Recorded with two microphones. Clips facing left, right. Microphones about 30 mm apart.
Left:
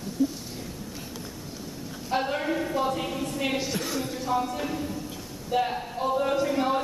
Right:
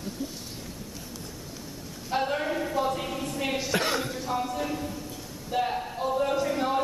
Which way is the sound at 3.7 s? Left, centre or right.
Right.